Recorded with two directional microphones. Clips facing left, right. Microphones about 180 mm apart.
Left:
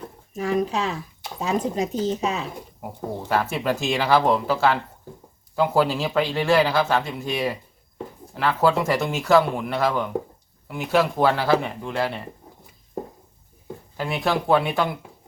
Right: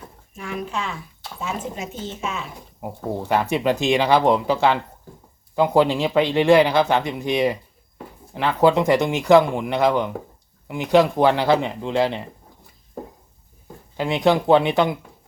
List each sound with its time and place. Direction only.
0.3 s speech: 40° left (ahead or behind)
3.2 s speech: 15° right (ahead or behind)
5.5 s speech: 20° right (ahead or behind)
13.9 s speech: 20° right (ahead or behind)